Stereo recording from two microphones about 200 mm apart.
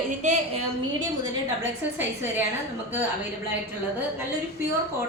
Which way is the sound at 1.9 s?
10° right (ahead or behind).